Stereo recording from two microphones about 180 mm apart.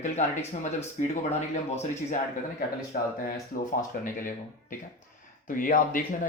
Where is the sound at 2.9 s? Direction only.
50° left (ahead or behind).